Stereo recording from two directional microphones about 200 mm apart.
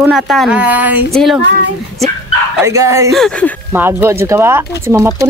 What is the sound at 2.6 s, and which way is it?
Speech, 15° right (ahead or behind).